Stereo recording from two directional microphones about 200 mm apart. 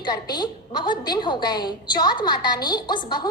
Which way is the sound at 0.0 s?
20° left (ahead or behind).